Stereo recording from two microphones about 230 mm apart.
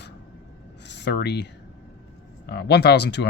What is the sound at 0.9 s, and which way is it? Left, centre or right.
Speech, left.